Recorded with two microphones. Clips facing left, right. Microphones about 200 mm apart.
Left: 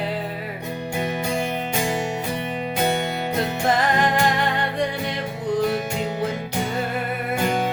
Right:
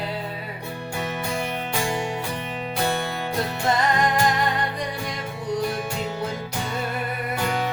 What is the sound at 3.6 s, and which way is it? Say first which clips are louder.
Music: left 1 dB; 30° left (ahead or behind).